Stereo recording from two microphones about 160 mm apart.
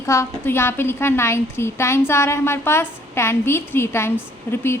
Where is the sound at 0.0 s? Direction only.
20° left (ahead or behind).